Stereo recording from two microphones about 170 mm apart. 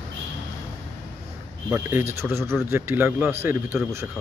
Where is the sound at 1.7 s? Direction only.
15° right (ahead or behind).